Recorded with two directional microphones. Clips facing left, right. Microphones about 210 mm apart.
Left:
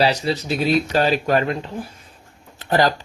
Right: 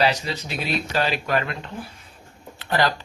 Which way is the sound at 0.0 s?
35° left (ahead or behind).